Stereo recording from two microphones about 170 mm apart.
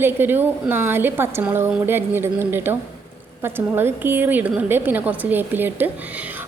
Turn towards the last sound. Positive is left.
turn(degrees=-10)  # may be behind; listen again after turning